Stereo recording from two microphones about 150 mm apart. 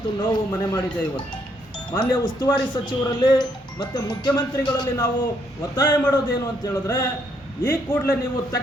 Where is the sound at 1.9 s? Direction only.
30° left (ahead or behind).